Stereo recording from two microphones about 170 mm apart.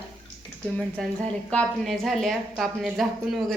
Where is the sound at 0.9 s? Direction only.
5° left (ahead or behind).